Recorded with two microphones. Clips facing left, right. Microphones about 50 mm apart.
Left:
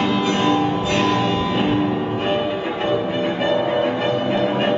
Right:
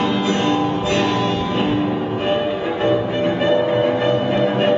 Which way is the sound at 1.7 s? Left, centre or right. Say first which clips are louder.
Even; centre.